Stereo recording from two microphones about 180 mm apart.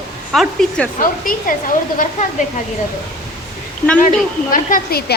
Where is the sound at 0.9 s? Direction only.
50° left (ahead or behind).